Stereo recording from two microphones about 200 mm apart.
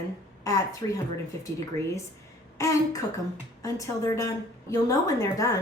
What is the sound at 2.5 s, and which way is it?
A woman's voice, 15° left (ahead or behind).